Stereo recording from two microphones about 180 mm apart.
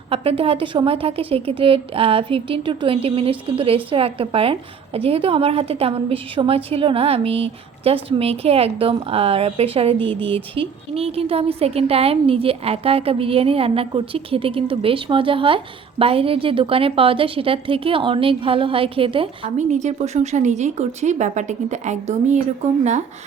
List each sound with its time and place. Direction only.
0.1 s a woman's voice: 30° right (ahead or behind)